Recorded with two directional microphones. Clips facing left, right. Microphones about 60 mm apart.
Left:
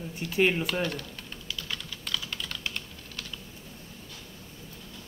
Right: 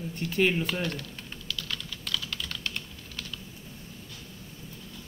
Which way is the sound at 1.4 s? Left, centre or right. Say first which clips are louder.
Right 1 dB; centre.